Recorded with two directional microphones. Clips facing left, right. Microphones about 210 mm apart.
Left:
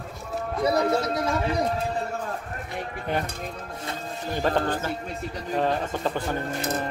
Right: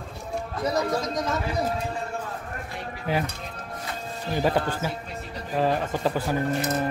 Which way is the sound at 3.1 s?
5° right (ahead or behind).